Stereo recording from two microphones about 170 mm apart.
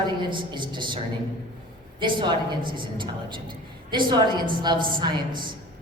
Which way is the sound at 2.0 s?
30° right (ahead or behind).